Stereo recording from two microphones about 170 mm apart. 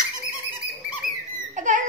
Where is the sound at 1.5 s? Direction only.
45° right (ahead or behind).